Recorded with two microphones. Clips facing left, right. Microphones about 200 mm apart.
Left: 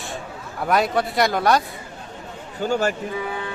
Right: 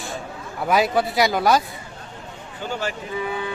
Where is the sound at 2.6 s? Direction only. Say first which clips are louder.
Left 6 dB; 45° left (ahead or behind).